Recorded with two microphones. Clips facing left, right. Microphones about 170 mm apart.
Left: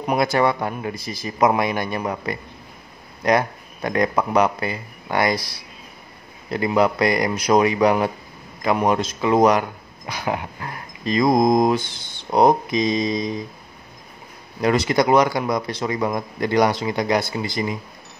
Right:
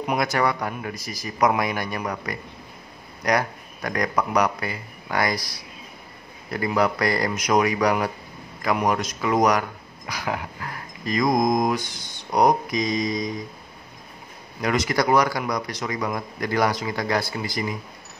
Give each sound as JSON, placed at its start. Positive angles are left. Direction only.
{"t": 0.0, "sound": "speech", "side_deg": 30}
{"t": 7.3, "sound": "speech", "side_deg": 30}
{"t": 14.6, "sound": "speech", "side_deg": 30}